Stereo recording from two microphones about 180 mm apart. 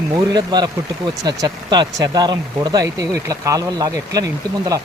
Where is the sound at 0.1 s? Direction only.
25° right (ahead or behind).